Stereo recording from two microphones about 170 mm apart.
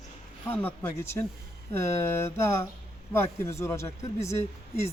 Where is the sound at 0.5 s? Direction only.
10° left (ahead or behind).